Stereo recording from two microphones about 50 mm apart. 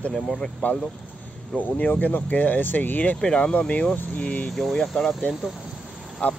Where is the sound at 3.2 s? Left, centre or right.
Centre.